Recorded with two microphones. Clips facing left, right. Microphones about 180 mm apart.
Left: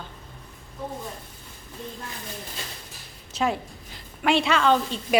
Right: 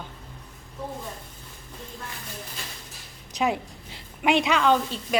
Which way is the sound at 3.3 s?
15° right (ahead or behind).